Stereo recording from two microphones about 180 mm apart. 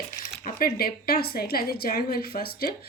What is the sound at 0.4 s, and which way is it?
A woman's voice, 55° left (ahead or behind).